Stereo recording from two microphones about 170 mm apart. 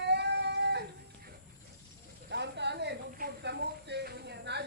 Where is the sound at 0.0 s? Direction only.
80° right.